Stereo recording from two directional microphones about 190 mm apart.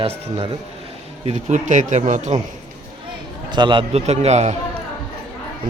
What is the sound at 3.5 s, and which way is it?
Speech, 25° right (ahead or behind).